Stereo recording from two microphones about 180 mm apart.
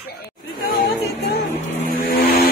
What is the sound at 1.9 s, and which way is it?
Vehicle, 55° left (ahead or behind).